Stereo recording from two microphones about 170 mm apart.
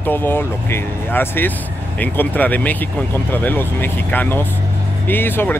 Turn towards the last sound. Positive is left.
turn(degrees=10)  # may be behind; listen again after turning